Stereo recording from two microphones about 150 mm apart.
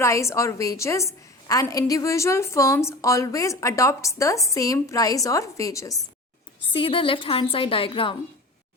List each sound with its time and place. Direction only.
0.0 s a woman's voice: 20° left (ahead or behind)
6.7 s a woman's voice: 35° left (ahead or behind)